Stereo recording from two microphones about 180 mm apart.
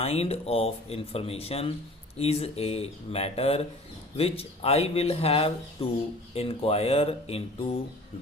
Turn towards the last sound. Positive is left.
turn(degrees=30)  # may be behind; listen again after turning